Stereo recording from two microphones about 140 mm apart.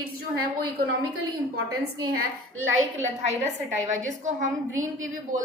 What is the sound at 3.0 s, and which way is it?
A woman's voice, 55° right (ahead or behind).